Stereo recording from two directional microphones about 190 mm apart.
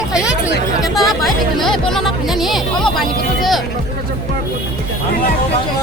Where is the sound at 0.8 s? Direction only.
Centre (ahead or behind).